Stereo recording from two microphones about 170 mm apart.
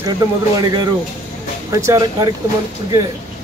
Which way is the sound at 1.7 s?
20° right (ahead or behind).